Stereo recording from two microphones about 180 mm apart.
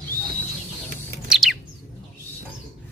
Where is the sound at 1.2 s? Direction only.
Centre (ahead or behind).